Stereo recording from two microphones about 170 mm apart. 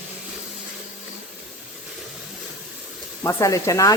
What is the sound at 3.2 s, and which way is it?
Speech, 20° left (ahead or behind).